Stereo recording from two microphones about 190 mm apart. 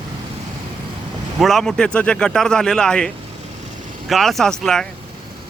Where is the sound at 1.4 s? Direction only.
Centre (ahead or behind).